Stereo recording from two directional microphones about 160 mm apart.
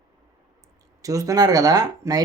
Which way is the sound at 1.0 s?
20° right (ahead or behind).